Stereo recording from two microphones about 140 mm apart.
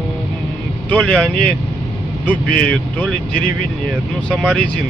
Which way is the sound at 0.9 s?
5° left (ahead or behind).